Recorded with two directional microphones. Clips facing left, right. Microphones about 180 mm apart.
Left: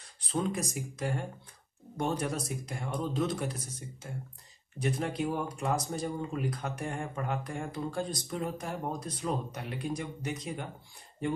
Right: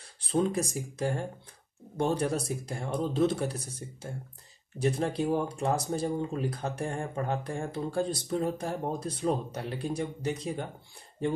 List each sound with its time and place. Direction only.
0.3 s speech: 30° right (ahead or behind)